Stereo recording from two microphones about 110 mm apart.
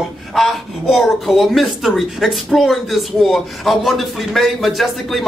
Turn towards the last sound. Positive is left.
turn(degrees=0)  # may be behind; listen again after turning